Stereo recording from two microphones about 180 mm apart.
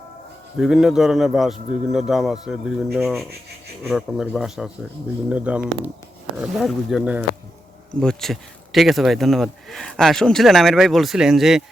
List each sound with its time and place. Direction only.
0.6 s a man's voice: 5° right (ahead or behind)